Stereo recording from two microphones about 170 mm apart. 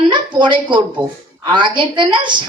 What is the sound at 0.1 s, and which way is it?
A woman's voice, 25° right (ahead or behind).